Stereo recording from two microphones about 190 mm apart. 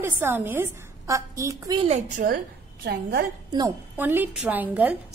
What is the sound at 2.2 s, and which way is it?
Speech, 55° right (ahead or behind).